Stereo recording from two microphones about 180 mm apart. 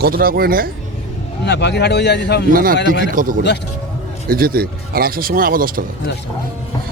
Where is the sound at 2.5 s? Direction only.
55° right (ahead or behind).